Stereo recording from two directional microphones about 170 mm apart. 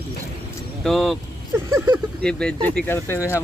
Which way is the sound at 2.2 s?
5° left (ahead or behind).